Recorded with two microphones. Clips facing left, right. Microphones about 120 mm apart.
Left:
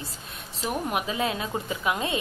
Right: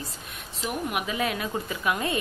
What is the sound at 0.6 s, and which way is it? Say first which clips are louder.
A woman's voice: left 1 dB; 30° left (ahead or behind).